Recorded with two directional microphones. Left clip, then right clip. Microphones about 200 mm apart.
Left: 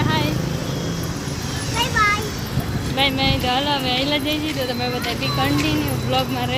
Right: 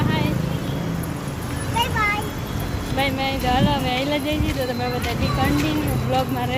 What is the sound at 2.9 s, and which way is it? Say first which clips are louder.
Speech: left 3 dB; 10° left (ahead or behind).